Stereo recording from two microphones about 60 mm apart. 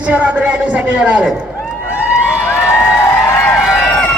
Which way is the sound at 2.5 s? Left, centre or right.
Left.